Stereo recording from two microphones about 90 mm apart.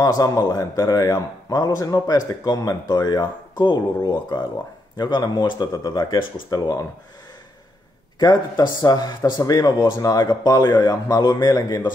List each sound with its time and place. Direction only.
0.0 s a man's voice: 40° left (ahead or behind)
8.2 s a man's voice: 50° left (ahead or behind)